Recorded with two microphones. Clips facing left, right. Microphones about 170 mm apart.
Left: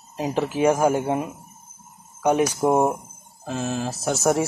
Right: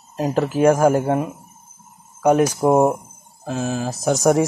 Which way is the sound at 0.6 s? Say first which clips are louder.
Right 4 dB; centre (ahead or behind).